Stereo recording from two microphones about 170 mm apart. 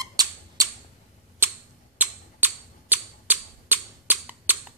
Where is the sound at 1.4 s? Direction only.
10° right (ahead or behind).